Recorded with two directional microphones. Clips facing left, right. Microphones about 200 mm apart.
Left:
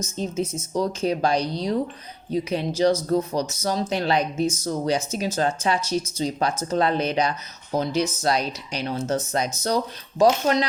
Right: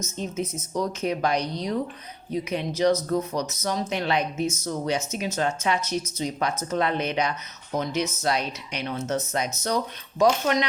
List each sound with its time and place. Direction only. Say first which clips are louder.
0.2 s speech: left 3 dB; 30° left (ahead or behind)